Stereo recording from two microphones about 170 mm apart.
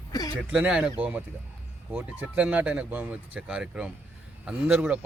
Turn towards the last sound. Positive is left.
turn(degrees=-5)  # may be behind; listen again after turning